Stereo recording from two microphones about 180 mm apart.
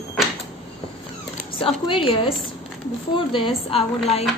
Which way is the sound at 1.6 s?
30° left (ahead or behind).